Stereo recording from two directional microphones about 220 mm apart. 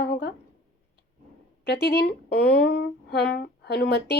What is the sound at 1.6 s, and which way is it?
Speech, 50° left (ahead or behind).